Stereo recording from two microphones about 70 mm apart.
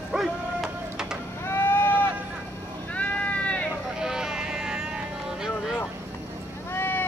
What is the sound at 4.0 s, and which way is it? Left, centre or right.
Sheep, centre.